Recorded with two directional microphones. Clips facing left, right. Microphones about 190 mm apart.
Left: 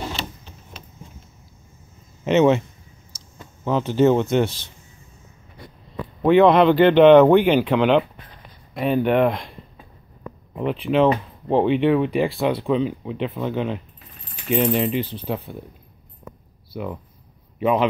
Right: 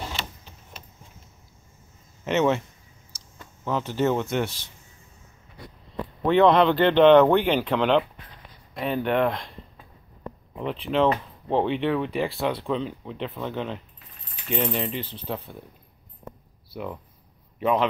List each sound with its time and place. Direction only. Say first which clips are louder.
2.2 s speech: left 6 dB; 20° left (ahead or behind)
5.9 s speech: left 5 dB; 10° left (ahead or behind)
10.5 s speech: left 5 dB; 10° left (ahead or behind)
16.7 s a man's voice: left 4 dB; 5° left (ahead or behind)